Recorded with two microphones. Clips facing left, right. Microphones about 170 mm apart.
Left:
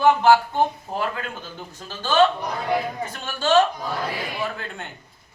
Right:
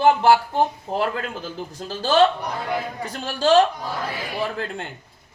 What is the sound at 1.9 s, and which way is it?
Speech, 35° right (ahead or behind).